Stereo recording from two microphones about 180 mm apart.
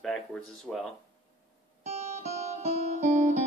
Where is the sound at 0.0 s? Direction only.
Centre (ahead or behind).